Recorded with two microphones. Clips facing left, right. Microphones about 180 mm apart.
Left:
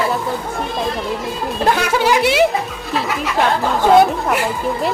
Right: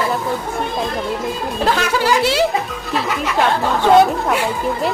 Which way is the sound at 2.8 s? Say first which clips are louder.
Even; centre (ahead or behind).